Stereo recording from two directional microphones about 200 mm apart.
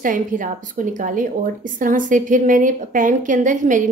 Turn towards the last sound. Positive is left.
turn(degrees=-40)  # may be behind; listen again after turning